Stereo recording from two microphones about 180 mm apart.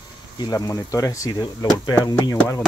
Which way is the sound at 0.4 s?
20° left (ahead or behind).